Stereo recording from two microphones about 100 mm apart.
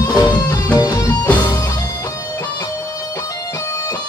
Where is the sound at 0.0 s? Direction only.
40° left (ahead or behind).